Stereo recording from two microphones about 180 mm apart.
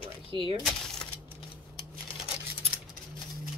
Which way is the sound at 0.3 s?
30° right (ahead or behind).